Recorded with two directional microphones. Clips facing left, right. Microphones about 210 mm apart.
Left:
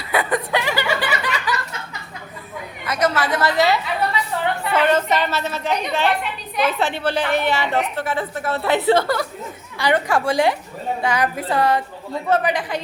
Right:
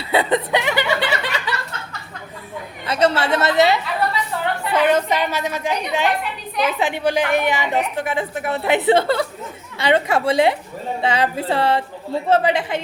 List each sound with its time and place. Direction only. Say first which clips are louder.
0.1 s snicker: right 3 dB; 25° right (ahead or behind)
2.8 s speech: right 2 dB; 30° right (ahead or behind)
4.9 s a woman's voice: right 1 dB; 10° right (ahead or behind)